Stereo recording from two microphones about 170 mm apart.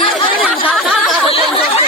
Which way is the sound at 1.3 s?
35° left (ahead or behind).